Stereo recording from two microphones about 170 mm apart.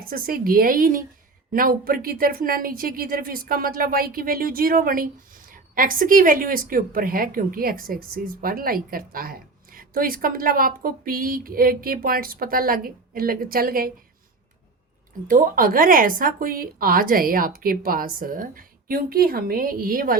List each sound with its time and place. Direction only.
0.1 s speech: 60° right (ahead or behind)
15.3 s speech: 55° right (ahead or behind)